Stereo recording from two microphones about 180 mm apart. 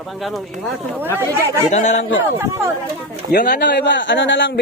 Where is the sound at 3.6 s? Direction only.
70° left (ahead or behind).